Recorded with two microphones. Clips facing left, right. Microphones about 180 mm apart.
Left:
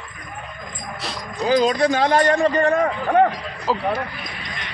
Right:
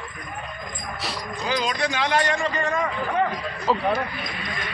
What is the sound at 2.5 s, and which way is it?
Speech, 60° left (ahead or behind).